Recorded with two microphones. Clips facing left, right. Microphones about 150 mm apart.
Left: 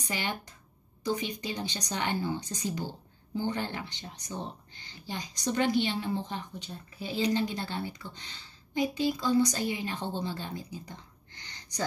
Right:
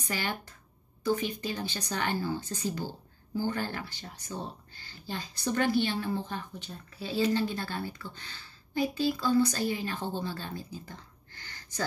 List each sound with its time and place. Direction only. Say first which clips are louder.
0.0 s a woman's voice: even; 20° left (ahead or behind)